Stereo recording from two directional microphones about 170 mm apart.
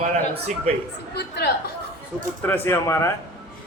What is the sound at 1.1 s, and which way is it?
Speech, 75° left (ahead or behind).